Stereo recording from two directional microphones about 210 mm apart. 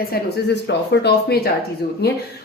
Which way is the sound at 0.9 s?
50° left (ahead or behind).